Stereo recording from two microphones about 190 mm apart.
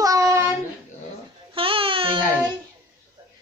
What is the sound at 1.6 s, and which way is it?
Baby cry, 30° right (ahead or behind).